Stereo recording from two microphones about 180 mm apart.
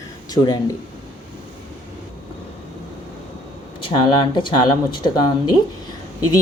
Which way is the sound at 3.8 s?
30° left (ahead or behind).